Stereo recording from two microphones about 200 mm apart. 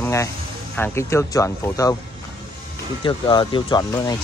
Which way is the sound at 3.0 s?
25° left (ahead or behind).